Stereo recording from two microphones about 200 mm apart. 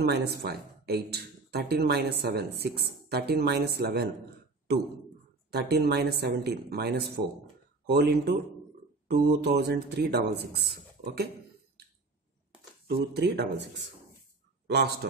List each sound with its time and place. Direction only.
0.0 s speech: 55° right (ahead or behind)
5.5 s speech: 55° right (ahead or behind)
12.8 s speech: 55° right (ahead or behind)